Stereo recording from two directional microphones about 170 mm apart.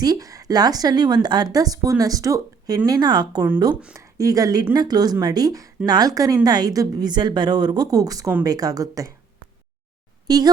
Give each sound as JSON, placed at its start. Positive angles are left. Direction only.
{"t": 0.0, "sound": "a woman's voice", "side_deg": -20}
{"t": 10.2, "sound": "a woman's voice", "side_deg": -25}